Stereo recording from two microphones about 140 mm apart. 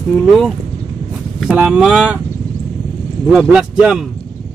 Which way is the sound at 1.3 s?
5° right (ahead or behind).